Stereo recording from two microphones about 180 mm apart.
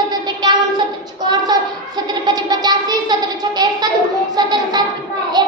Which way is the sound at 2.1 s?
20° right (ahead or behind).